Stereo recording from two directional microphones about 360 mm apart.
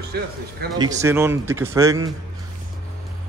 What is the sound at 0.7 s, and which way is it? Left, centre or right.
Speech, centre.